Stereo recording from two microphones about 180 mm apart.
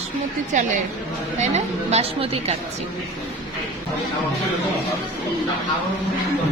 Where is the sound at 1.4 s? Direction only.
35° right (ahead or behind).